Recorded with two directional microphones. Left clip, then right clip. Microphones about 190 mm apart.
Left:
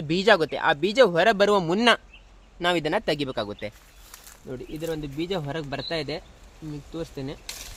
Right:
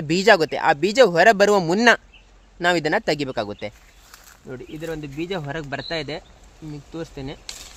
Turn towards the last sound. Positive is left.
turn(degrees=-30)  # may be behind; listen again after turning